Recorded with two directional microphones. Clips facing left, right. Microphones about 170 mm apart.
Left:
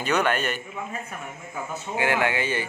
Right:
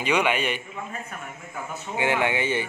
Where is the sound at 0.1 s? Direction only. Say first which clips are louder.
Even; 5° right (ahead or behind).